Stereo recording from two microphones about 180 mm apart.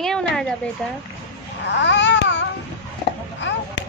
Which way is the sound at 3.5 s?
80° left.